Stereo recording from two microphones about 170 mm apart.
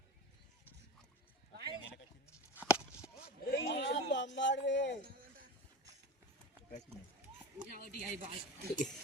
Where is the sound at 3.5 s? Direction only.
85° left.